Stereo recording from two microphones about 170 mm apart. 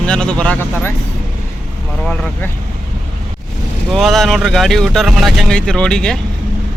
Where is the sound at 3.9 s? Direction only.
Centre (ahead or behind).